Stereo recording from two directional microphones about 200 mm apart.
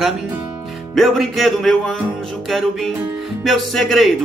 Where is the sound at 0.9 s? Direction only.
Centre (ahead or behind).